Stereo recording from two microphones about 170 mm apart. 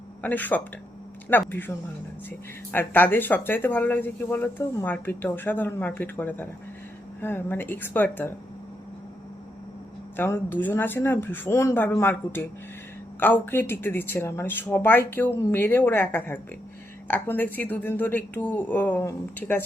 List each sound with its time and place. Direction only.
0.2 s speech: 10° left (ahead or behind)
2.7 s speech: 10° left (ahead or behind)
10.2 s speech: 15° left (ahead or behind)